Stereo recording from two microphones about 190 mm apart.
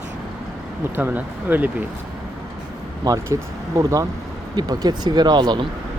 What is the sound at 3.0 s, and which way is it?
Speech, 20° right (ahead or behind).